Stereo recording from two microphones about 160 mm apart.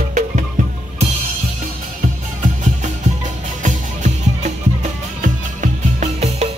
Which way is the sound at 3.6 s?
50° right (ahead or behind).